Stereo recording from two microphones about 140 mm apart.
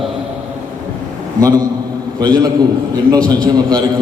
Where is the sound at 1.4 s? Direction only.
25° right (ahead or behind).